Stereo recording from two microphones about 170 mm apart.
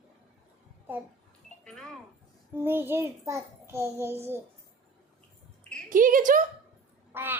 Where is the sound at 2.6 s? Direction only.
15° right (ahead or behind).